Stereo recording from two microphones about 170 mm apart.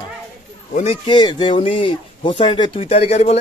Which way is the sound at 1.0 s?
25° left (ahead or behind).